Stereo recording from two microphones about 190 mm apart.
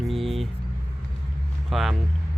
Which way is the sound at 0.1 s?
Centre (ahead or behind).